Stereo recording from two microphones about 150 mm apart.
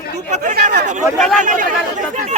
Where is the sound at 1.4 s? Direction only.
60° right (ahead or behind).